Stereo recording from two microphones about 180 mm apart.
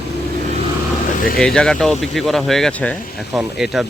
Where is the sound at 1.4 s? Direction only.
5° left (ahead or behind).